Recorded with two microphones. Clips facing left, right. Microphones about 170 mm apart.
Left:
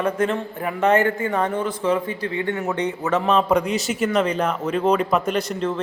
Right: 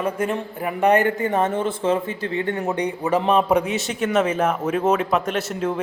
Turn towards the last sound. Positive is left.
turn(degrees=-10)  # may be behind; listen again after turning